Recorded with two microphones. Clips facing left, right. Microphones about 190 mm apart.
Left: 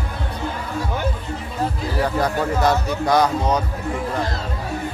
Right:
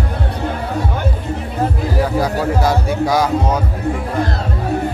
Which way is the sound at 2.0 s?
10° right (ahead or behind).